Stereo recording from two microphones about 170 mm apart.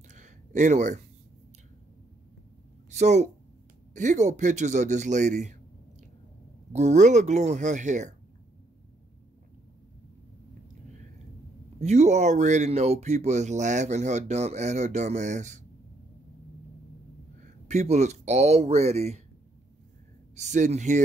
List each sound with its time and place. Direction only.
0.1 s a sound: 45° right (ahead or behind)
2.9 s speech: 40° right (ahead or behind)
6.7 s speech: 45° right (ahead or behind)
11.8 s speech: 40° right (ahead or behind)
17.6 s speech: 40° right (ahead or behind)
20.3 s speech: 45° right (ahead or behind)